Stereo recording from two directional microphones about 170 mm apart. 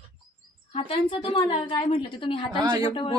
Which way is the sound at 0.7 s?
30° left (ahead or behind).